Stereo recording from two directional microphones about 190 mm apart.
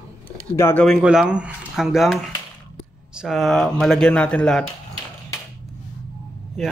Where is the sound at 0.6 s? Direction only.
15° left (ahead or behind).